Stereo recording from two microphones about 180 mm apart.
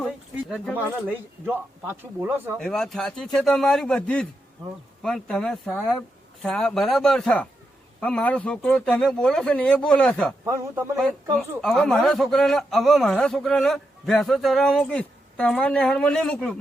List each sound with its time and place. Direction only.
0.3 s bird: centre (ahead or behind)
1.0 s speech: 10° right (ahead or behind)
2.6 s a man's voice: 5° left (ahead or behind)
10.4 s speech: 15° right (ahead or behind)
10.9 s a man's voice: 5° left (ahead or behind)